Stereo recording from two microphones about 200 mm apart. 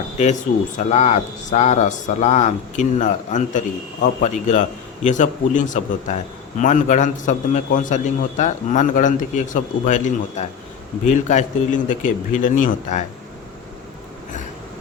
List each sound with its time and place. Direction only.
0.9 s a man's voice: 35° left (ahead or behind)